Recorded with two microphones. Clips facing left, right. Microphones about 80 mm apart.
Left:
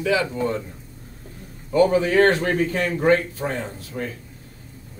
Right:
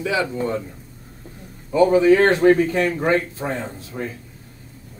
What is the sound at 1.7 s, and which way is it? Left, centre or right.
Speech, right.